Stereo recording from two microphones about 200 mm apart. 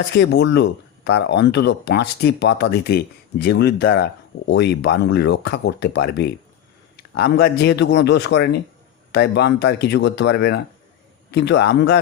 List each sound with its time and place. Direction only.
0.1 s speech: 55° left (ahead or behind)